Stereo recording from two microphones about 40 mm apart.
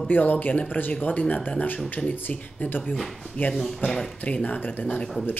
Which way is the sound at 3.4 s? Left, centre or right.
Left.